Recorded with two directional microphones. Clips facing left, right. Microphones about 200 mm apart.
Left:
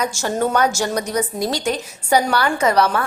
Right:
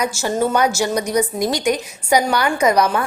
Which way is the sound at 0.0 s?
10° right (ahead or behind).